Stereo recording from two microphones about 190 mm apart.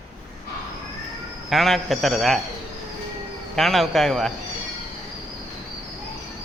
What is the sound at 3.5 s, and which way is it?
Speech, centre (ahead or behind).